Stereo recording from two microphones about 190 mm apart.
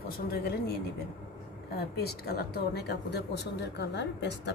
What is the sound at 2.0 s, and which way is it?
Speech, 55° left (ahead or behind).